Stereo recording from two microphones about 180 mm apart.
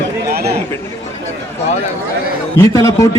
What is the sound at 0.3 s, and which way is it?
Chatter, 60° right (ahead or behind).